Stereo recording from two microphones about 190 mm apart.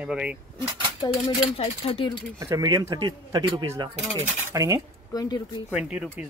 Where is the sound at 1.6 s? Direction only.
30° left (ahead or behind).